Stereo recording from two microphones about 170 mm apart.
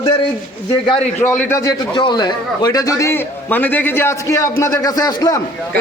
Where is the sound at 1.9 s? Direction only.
25° left (ahead or behind).